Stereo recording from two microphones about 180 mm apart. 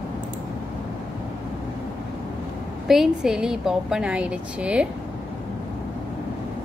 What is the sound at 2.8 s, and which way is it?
A woman's voice, centre (ahead or behind).